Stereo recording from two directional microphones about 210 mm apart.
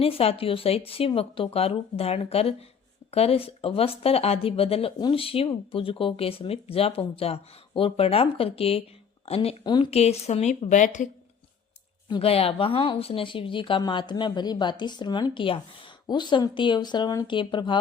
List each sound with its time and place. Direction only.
0.0 s speech: 25° left (ahead or behind)
12.0 s speech: 25° left (ahead or behind)